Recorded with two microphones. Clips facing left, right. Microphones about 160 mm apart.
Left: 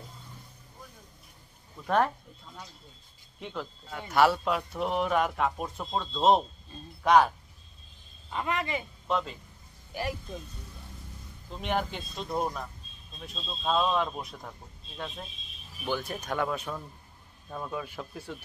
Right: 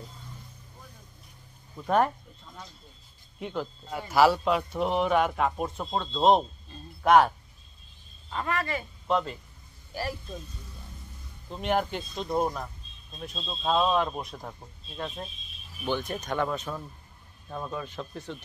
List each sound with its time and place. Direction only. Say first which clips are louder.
3.3 s speech: right 4 dB; 5° right (ahead or behind)
8.3 s speech: right 1 dB; 15° left (ahead or behind)
9.0 s speech: right 4 dB; centre (ahead or behind)
11.5 s speech: right 3 dB; centre (ahead or behind)